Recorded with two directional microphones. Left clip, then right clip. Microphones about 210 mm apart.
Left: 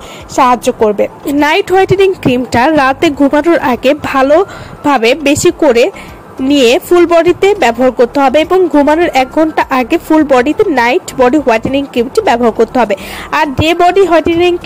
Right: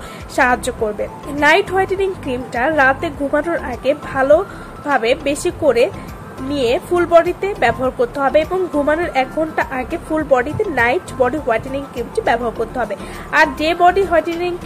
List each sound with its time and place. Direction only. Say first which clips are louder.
0.4 s speech: left 7 dB; 30° left (ahead or behind)